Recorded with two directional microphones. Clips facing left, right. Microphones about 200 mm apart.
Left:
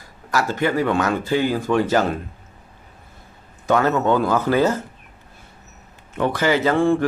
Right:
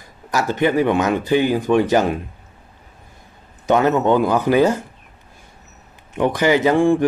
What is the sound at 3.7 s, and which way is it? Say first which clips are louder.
Speech: right 2 dB; 20° right (ahead or behind).